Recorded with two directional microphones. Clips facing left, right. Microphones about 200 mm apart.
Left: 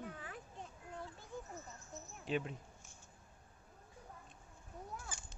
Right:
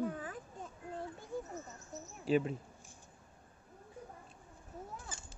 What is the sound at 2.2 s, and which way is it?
Speech, 5° right (ahead or behind).